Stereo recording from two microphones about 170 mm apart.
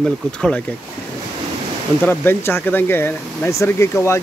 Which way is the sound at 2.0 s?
10° left (ahead or behind).